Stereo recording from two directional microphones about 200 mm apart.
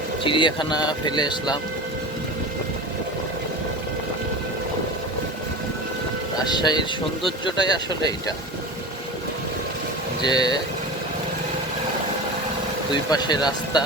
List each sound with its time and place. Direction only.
0.3 s speech: 25° left (ahead or behind)
6.4 s speech: 20° left (ahead or behind)
10.2 s speech: 20° left (ahead or behind)
13.1 s speech: 20° left (ahead or behind)